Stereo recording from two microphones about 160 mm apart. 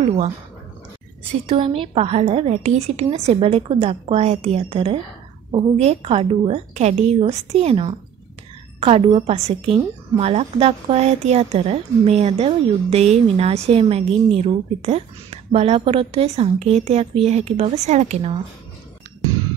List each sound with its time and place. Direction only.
1.4 s a woman's voice: 35° right (ahead or behind)